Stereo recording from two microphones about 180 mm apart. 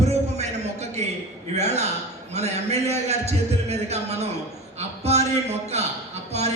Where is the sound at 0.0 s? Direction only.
40° right (ahead or behind).